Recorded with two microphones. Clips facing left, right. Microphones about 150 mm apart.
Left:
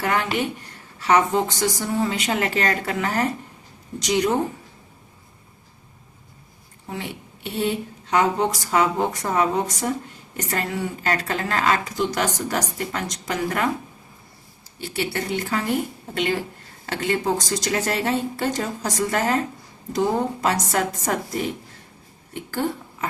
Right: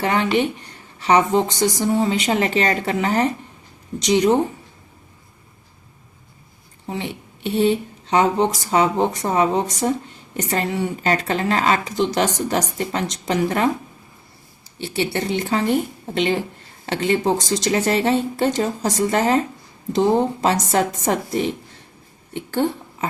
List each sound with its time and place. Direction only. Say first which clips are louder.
0.0 s a woman's voice: right 4 dB; 20° right (ahead or behind)
6.8 s a woman's voice: right 4 dB; 25° right (ahead or behind)
14.8 s a woman's voice: right 4 dB; 25° right (ahead or behind)